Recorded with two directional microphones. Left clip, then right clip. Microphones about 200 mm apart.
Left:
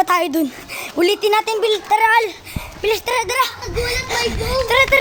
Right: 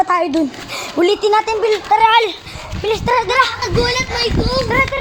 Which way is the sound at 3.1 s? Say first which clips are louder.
Right 4 dB; 25° left (ahead or behind).